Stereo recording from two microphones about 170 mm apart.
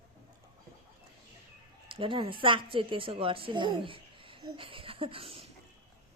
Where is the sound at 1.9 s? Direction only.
30° right (ahead or behind).